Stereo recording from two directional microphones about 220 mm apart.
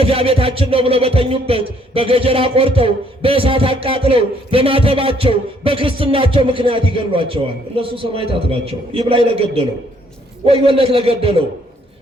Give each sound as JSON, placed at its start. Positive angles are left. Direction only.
{"t": 0.0, "sound": "music", "side_deg": -25}